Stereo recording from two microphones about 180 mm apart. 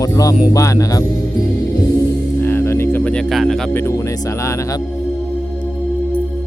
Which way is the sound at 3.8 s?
15° left (ahead or behind).